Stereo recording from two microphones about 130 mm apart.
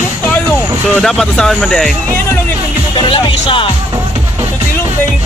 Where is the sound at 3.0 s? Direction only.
40° left (ahead or behind).